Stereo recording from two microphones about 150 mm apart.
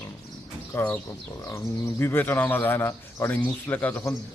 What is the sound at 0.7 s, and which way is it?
Speech, 15° left (ahead or behind).